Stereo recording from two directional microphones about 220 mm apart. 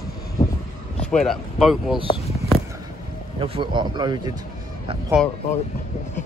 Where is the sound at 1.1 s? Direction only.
Centre (ahead or behind).